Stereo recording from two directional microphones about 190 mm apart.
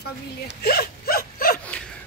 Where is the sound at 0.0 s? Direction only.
55° left (ahead or behind).